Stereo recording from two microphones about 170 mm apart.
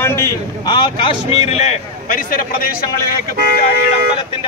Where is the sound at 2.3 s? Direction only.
55° left (ahead or behind).